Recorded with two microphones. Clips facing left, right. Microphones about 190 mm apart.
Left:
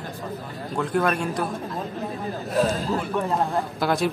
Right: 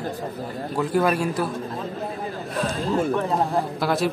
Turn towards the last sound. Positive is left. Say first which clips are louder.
# right 1 dB
turn(degrees=0)  # may be behind; listen again after turning